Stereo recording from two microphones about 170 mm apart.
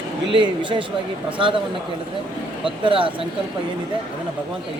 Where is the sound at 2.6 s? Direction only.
30° right (ahead or behind).